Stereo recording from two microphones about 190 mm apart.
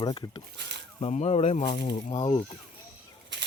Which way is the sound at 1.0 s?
35° left (ahead or behind).